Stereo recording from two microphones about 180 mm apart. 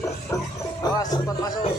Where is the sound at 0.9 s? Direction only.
20° left (ahead or behind).